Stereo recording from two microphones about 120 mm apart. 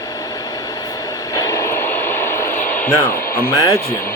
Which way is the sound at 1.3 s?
25° left (ahead or behind).